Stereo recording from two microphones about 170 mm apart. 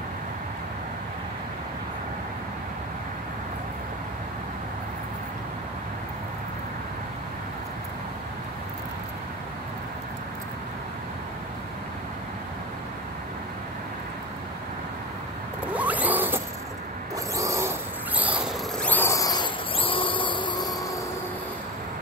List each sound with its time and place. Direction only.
15.7 s zipper: 10° right (ahead or behind)
17.4 s dog: 15° right (ahead or behind)
18.8 s a sound: 10° left (ahead or behind); by 20.7 s 30° left (ahead or behind)